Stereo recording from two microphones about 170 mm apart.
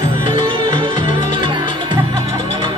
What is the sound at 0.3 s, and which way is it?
Music, 30° right (ahead or behind).